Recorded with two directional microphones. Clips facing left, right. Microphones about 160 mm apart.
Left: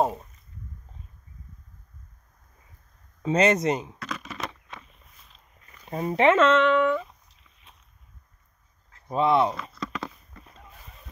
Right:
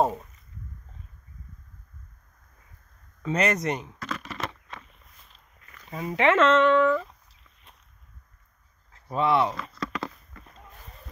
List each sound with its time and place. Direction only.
0.0 s speech: 5° left (ahead or behind)
3.2 s speech: 25° left (ahead or behind)
4.0 s a sound: 5° left (ahead or behind)
5.9 s speech: 30° left (ahead or behind)
6.3 s speech: 5° left (ahead or behind)
9.0 s speech: 20° left (ahead or behind)
9.6 s a sound: 5° left (ahead or behind)